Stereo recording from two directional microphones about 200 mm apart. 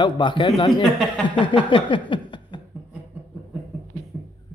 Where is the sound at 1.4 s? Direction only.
25° left (ahead or behind).